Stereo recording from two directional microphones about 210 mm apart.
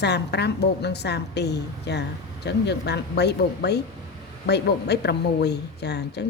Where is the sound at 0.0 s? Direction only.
55° left (ahead or behind).